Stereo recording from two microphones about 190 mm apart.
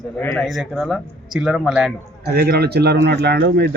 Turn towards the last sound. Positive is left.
turn(degrees=-60)  # may be behind; listen again after turning